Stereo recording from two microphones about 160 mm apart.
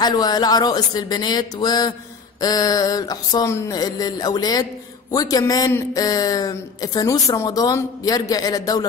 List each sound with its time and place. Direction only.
0.0 s a man's voice: 25° left (ahead or behind)